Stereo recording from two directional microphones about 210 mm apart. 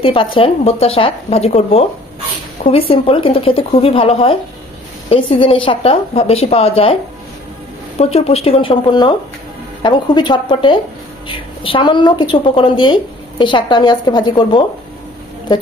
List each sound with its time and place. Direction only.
0.0 s a woman's voice: 25° left (ahead or behind)
2.9 s a woman's voice: 25° left (ahead or behind)
8.0 s a woman's voice: 30° left (ahead or behind)